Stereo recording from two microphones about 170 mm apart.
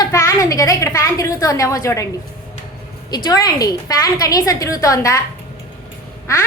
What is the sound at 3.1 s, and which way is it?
A woman's voice, 25° left (ahead or behind).